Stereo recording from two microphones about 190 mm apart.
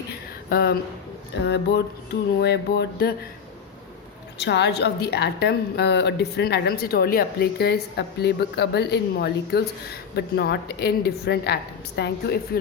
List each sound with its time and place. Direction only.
0.5 s a woman's voice: 55° left (ahead or behind)
4.4 s a woman's voice: 65° left (ahead or behind)